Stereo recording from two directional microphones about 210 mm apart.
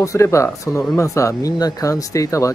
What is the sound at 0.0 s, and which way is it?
Speech, 15° left (ahead or behind).